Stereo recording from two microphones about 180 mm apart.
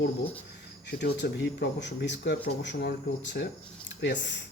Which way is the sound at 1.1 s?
70° left (ahead or behind).